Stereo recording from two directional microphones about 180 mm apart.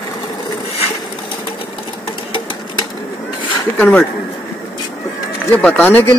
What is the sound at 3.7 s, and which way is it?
Speech, 10° left (ahead or behind).